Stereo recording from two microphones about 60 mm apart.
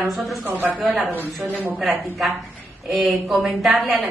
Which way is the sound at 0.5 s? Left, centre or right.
Right.